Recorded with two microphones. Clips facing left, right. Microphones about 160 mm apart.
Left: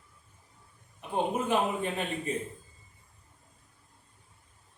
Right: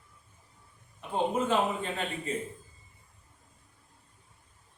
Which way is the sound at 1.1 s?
15° left (ahead or behind).